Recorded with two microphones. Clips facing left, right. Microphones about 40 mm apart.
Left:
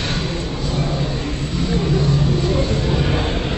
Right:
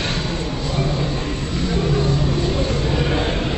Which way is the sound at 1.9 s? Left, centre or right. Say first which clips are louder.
Left 1 dB; right.